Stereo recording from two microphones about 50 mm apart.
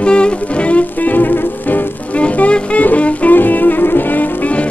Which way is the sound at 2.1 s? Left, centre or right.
Left.